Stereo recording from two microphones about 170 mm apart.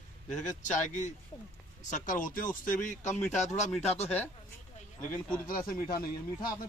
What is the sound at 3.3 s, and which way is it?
Speech, 45° left (ahead or behind).